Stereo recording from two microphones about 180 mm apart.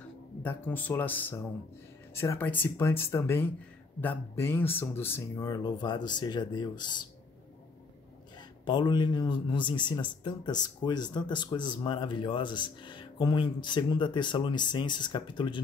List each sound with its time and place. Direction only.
0.4 s speech: 10° left (ahead or behind)
8.4 s speech: 25° left (ahead or behind)